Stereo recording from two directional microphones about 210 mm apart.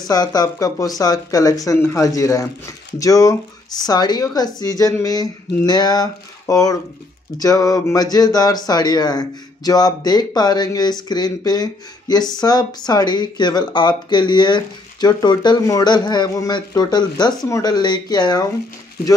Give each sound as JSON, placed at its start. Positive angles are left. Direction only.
{"t": 0.1, "sound": "speech", "side_deg": 20}